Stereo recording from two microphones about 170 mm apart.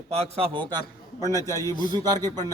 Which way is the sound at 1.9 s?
25° right (ahead or behind).